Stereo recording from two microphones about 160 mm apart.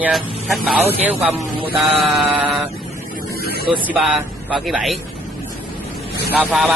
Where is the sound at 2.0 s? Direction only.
Centre (ahead or behind).